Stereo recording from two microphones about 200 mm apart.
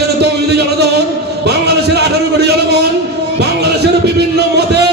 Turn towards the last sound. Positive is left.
turn(degrees=-55)  # may be behind; listen again after turning